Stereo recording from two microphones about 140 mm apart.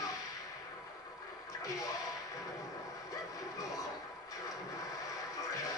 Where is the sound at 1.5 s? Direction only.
25° left (ahead or behind).